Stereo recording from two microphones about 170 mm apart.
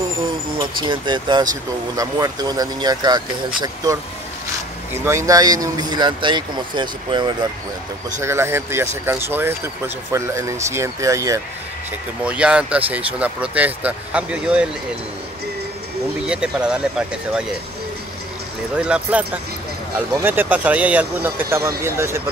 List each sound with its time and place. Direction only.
0.6 s speech: 30° right (ahead or behind)
8.2 s speech: 15° right (ahead or behind)
12.3 s speech: 5° right (ahead or behind)
16.3 s speech: 5° right (ahead or behind)
18.8 s speech: 5° right (ahead or behind)